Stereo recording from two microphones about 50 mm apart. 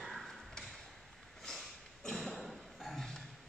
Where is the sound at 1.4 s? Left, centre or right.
Centre.